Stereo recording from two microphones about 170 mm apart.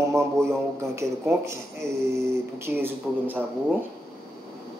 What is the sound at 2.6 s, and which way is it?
Speech, 15° right (ahead or behind).